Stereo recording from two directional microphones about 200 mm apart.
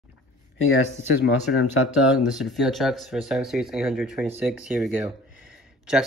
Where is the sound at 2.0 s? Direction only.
5° right (ahead or behind).